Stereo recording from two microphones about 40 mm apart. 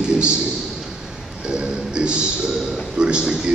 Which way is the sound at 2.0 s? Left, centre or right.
Right.